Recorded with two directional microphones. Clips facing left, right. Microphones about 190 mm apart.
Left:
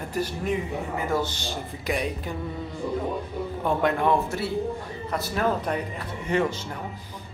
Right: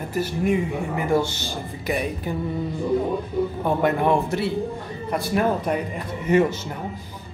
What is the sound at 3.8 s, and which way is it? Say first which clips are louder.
A man's voice: right 3 dB; 10° right (ahead or behind).